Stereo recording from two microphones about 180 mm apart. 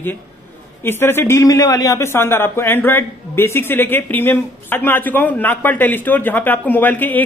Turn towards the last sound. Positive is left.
turn(degrees=10)  # may be behind; listen again after turning